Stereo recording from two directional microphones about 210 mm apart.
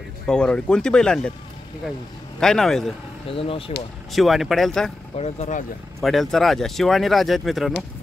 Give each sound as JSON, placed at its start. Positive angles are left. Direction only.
{"t": 0.3, "sound": "speech", "side_deg": 5}
{"t": 2.4, "sound": "speech", "side_deg": 0}
{"t": 3.3, "sound": "speech", "side_deg": 25}
{"t": 4.1, "sound": "speech", "side_deg": 0}
{"t": 5.1, "sound": "speech", "side_deg": 30}
{"t": 5.9, "sound": "speech", "side_deg": 0}